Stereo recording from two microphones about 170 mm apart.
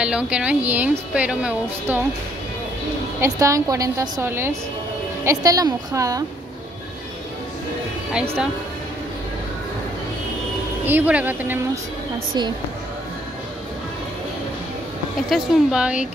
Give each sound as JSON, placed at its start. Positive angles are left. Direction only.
{"t": 0.0, "sound": "speech", "side_deg": -5}
{"t": 3.2, "sound": "speech", "side_deg": -20}
{"t": 8.1, "sound": "speech", "side_deg": -5}
{"t": 10.9, "sound": "speech", "side_deg": -10}
{"t": 15.2, "sound": "speech", "side_deg": 0}